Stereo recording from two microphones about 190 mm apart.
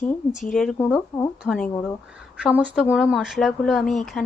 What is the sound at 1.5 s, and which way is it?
Speech, 5° left (ahead or behind).